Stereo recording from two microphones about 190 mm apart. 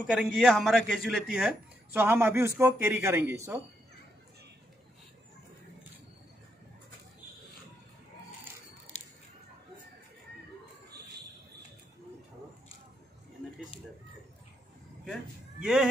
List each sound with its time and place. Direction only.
0.1 s a man's voice: centre (ahead or behind)
1.9 s speech: 10° right (ahead or behind)
8.9 s a sound: 40° left (ahead or behind)
15.6 s speech: 5° right (ahead or behind)